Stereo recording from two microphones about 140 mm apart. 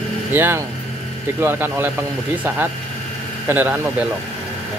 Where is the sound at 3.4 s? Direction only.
15° right (ahead or behind).